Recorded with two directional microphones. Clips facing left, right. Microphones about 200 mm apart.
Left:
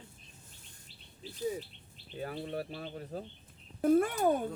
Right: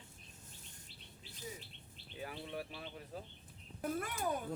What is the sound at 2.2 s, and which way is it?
Speech, 40° left (ahead or behind).